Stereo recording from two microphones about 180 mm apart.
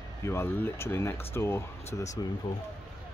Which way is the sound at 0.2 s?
15° left (ahead or behind).